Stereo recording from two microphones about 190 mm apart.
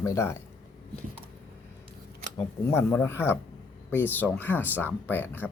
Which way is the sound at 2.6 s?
10° left (ahead or behind).